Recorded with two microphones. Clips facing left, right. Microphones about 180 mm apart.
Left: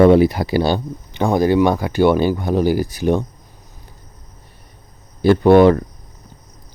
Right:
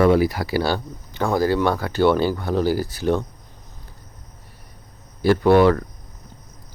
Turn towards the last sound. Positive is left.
turn(degrees=20)  # may be behind; listen again after turning